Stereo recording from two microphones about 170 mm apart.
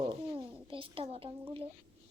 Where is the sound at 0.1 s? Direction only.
30° right (ahead or behind).